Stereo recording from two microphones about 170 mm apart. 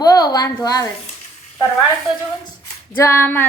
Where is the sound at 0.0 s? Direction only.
20° left (ahead or behind).